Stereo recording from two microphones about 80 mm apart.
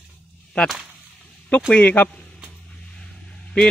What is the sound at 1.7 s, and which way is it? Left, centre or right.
Speech, centre.